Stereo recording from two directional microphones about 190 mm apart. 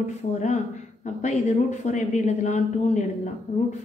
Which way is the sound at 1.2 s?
40° left (ahead or behind).